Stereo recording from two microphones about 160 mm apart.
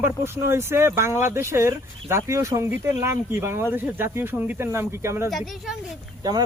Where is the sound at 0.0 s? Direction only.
15° right (ahead or behind).